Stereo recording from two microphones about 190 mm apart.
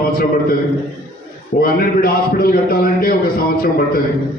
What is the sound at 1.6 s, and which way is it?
A man's voice, 50° left (ahead or behind).